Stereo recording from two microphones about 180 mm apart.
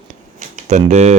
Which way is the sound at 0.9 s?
40° right (ahead or behind).